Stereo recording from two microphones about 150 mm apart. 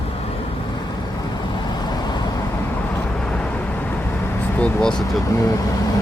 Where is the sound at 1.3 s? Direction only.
30° left (ahead or behind).